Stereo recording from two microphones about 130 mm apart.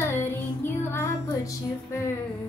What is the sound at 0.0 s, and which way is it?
Child singing, 15° left (ahead or behind).